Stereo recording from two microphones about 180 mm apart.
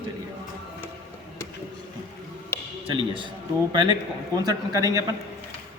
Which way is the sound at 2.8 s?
30° right (ahead or behind).